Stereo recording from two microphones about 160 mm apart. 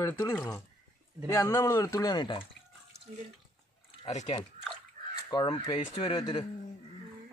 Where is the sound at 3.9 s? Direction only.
45° left (ahead or behind).